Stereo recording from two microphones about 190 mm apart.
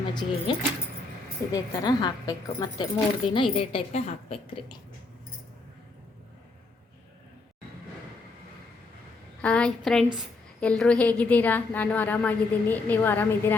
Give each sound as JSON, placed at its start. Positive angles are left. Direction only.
{"t": 0.1, "sound": "speech", "side_deg": 25}
{"t": 1.5, "sound": "speech", "side_deg": 20}
{"t": 9.4, "sound": "a woman's voice", "side_deg": 5}